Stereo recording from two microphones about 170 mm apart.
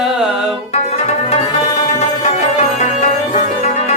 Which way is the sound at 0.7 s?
40° left (ahead or behind).